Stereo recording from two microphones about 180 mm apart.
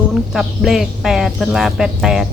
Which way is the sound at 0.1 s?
Centre (ahead or behind).